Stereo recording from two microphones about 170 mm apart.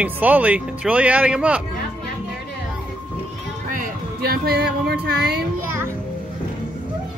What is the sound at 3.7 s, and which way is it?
Music, 60° right (ahead or behind).